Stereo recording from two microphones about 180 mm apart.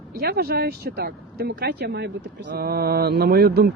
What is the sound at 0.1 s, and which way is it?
Speech, 60° right (ahead or behind).